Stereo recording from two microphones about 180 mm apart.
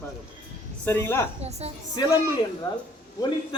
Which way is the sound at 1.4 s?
35° right (ahead or behind).